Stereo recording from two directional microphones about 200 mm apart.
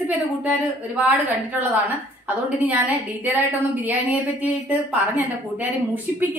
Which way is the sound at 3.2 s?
10° right (ahead or behind).